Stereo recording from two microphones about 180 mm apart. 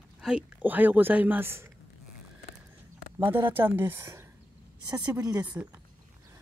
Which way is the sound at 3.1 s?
10° right (ahead or behind).